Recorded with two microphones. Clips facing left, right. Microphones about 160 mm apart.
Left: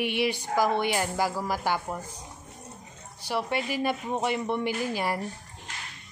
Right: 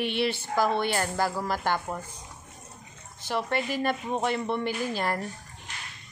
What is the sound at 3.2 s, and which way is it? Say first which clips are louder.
A woman's voice: even; 10° left (ahead or behind).